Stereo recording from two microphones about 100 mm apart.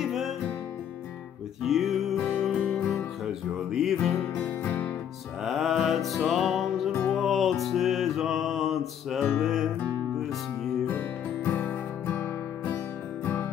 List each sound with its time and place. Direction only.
0.0 s music: 5° right (ahead or behind)
1.6 s music: centre (ahead or behind)
2.5 s music: 15° left (ahead or behind)
3.7 s music: centre (ahead or behind)
4.2 s music: 20° left (ahead or behind)
5.4 s music: centre (ahead or behind)
6.9 s music: 10° left (ahead or behind)
10.9 s music: 20° left (ahead or behind)